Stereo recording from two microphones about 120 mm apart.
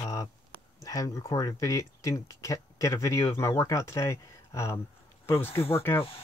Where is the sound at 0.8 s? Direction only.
30° left (ahead or behind).